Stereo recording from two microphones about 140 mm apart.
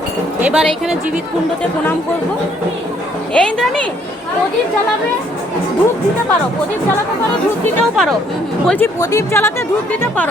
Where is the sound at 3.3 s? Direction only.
5° left (ahead or behind).